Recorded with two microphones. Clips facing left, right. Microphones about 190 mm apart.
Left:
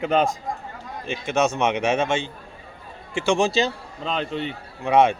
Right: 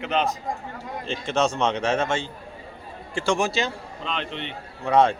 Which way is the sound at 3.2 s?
25° left (ahead or behind).